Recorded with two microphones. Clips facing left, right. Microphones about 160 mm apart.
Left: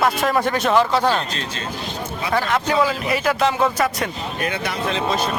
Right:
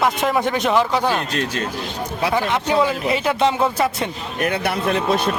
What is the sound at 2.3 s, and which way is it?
A man's voice, 20° right (ahead or behind).